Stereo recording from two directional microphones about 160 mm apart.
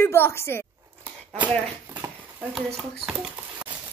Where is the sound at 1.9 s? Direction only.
10° right (ahead or behind).